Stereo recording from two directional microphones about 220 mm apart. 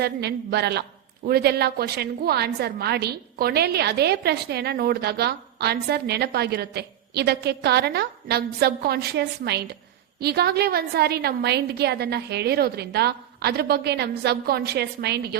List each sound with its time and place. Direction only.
0.0 s a woman's voice: 50° right (ahead or behind)